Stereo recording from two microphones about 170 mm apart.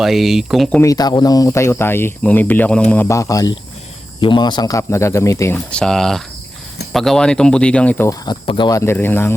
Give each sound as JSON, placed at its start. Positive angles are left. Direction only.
{"t": 0.0, "sound": "speech", "side_deg": 0}
{"t": 0.8, "sound": "speech", "side_deg": 20}
{"t": 5.7, "sound": "speech", "side_deg": 5}
{"t": 8.2, "sound": "speech", "side_deg": 25}
{"t": 8.8, "sound": "speech", "side_deg": 15}